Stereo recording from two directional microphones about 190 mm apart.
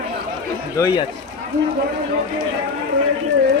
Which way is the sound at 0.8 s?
20° left (ahead or behind).